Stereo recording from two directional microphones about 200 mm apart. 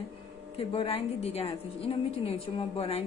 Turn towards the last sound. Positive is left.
turn(degrees=30)  # may be behind; listen again after turning